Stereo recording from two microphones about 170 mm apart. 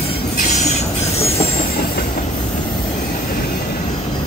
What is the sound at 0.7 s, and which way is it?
Train, 35° left (ahead or behind).